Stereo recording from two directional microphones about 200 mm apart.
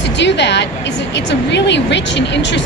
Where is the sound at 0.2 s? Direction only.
60° left (ahead or behind).